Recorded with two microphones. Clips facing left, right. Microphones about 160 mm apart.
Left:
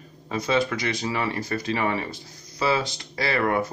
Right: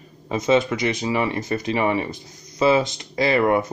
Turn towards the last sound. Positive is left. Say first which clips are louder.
# right 5 dB
turn(degrees=-20)  # may be behind; listen again after turning